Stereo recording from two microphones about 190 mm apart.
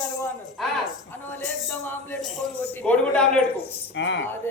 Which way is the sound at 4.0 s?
70° left (ahead or behind).